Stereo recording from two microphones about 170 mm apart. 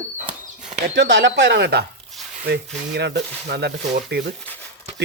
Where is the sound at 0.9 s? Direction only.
90° right.